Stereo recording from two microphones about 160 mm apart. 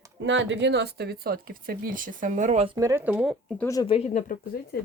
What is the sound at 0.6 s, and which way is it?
Speech, 90° right.